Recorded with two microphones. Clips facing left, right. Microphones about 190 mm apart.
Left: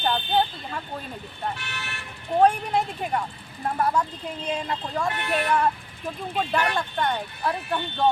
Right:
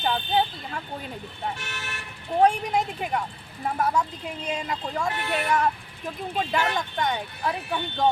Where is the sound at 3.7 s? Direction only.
5° left (ahead or behind).